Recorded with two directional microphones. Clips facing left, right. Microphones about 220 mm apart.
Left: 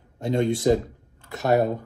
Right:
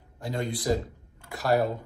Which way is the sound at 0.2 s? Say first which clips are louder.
Left 9 dB; 25° left (ahead or behind).